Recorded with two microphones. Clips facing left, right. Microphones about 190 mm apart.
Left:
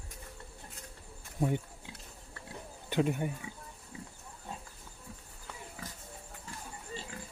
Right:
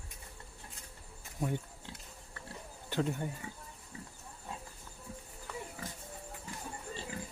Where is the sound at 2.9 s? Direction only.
15° left (ahead or behind).